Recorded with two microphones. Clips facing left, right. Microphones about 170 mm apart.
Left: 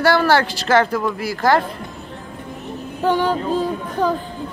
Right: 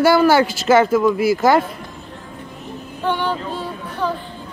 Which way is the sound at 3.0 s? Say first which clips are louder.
Left 3 dB; 40° left (ahead or behind).